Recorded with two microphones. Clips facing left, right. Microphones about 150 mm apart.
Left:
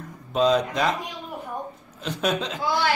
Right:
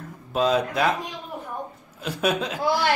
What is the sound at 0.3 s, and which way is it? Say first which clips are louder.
Speech: left 1 dB; 5° right (ahead or behind).